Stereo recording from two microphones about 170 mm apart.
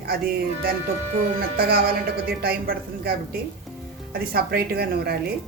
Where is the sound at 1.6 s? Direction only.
65° right (ahead or behind).